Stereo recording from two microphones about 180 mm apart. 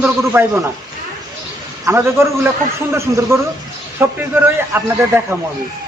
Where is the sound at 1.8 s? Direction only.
15° right (ahead or behind).